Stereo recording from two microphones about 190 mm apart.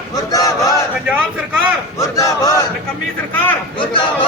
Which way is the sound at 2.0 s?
15° left (ahead or behind).